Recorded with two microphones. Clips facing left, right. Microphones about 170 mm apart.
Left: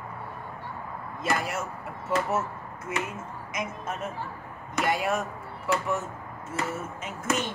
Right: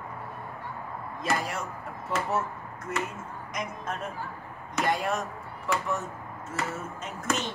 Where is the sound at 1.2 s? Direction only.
Centre (ahead or behind).